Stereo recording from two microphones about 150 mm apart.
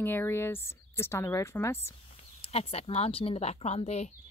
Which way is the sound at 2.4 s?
40° left (ahead or behind).